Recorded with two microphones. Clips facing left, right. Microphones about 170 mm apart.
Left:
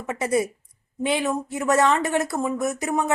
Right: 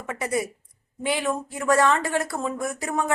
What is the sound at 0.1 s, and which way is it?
Speech, 25° left (ahead or behind).